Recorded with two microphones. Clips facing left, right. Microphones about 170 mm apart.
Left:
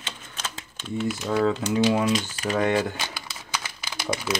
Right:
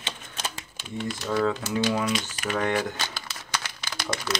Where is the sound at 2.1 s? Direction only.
35° left (ahead or behind).